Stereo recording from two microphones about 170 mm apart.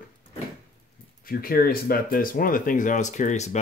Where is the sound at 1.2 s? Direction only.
60° left (ahead or behind).